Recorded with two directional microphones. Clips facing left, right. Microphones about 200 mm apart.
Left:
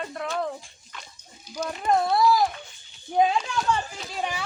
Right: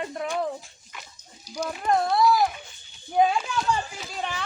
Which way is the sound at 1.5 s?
40° right (ahead or behind).